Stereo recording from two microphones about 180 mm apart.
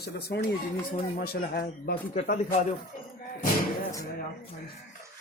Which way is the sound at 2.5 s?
35° left (ahead or behind).